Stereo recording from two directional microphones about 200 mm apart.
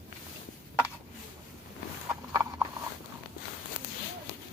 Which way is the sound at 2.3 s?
15° right (ahead or behind).